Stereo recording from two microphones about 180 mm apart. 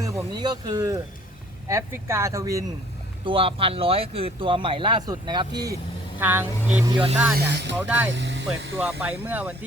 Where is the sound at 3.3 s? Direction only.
30° right (ahead or behind).